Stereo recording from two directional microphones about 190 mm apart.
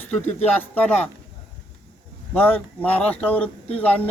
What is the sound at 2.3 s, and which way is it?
Speech, 10° left (ahead or behind).